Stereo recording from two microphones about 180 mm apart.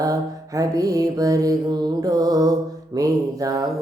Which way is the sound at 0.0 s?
20° right (ahead or behind).